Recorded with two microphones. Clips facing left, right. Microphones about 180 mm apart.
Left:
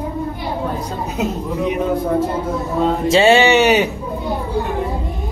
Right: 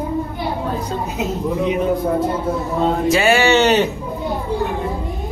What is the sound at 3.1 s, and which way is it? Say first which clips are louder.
Speech: left 4 dB; 25° left (ahead or behind).